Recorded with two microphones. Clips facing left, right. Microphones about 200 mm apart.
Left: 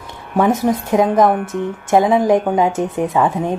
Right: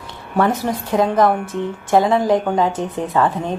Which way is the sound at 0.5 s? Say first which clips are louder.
Left 4 dB; 25° left (ahead or behind).